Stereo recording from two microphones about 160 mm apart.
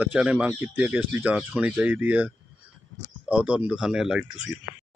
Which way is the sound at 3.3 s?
10° right (ahead or behind).